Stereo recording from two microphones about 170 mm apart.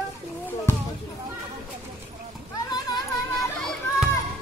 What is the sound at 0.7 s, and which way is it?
Music, 15° left (ahead or behind).